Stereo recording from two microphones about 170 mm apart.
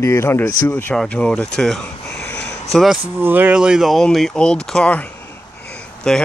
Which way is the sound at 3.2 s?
10° right (ahead or behind).